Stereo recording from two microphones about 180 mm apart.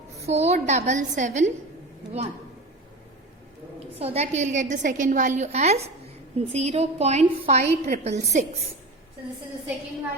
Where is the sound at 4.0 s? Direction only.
35° right (ahead or behind).